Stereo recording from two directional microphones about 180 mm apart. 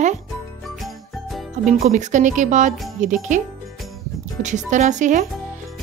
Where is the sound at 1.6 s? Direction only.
40° right (ahead or behind).